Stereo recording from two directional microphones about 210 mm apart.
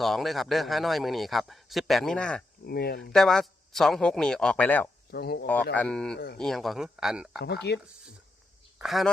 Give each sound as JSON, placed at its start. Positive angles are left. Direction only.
{"t": 0.0, "sound": "a man's voice", "side_deg": 0}
{"t": 2.6, "sound": "speech", "side_deg": 45}
{"t": 3.1, "sound": "a man's voice", "side_deg": 0}
{"t": 5.1, "sound": "speech", "side_deg": 50}
{"t": 5.7, "sound": "a man's voice", "side_deg": 5}
{"t": 6.1, "sound": "speech", "side_deg": 45}
{"t": 6.4, "sound": "a man's voice", "side_deg": 0}
{"t": 7.3, "sound": "speech", "side_deg": 50}
{"t": 8.8, "sound": "speech", "side_deg": 0}